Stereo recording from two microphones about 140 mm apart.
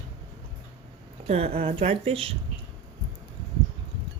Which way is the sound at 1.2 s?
45° right (ahead or behind).